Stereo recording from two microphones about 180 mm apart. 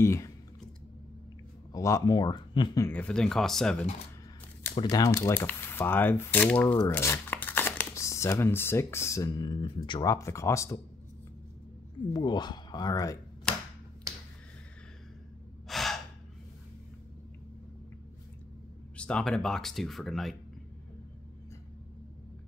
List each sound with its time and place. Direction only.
0.0 s speech: 15° left (ahead or behind)
1.7 s speech: 20° left (ahead or behind)
2.9 s speech: 5° left (ahead or behind)
4.8 s speech: 20° left (ahead or behind)
12.1 s speech: 25° left (ahead or behind)
14.1 s finger snapping: 15° right (ahead or behind)
15.7 s gasp: centre (ahead or behind)
18.9 s speech: 5° left (ahead or behind)